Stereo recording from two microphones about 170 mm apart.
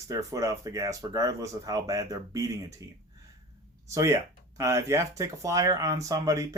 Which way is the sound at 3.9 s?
15° right (ahead or behind).